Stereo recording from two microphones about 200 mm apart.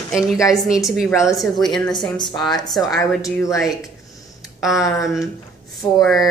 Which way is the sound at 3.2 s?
15° left (ahead or behind).